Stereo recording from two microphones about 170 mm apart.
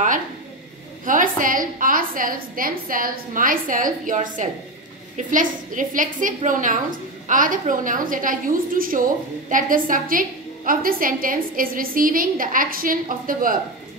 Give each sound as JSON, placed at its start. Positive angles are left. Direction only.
{"t": 1.0, "sound": "a woman's voice", "side_deg": -50}